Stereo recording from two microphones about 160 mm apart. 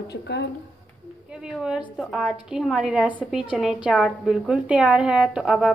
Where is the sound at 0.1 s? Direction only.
90° left.